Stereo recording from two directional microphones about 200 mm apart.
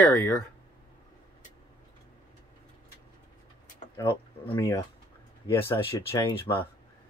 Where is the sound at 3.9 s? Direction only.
20° left (ahead or behind).